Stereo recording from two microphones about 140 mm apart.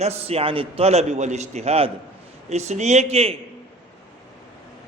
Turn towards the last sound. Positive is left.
turn(degrees=-45)  # may be behind; listen again after turning